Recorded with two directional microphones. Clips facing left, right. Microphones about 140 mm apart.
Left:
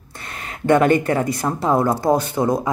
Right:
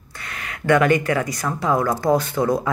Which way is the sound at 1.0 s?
25° left (ahead or behind).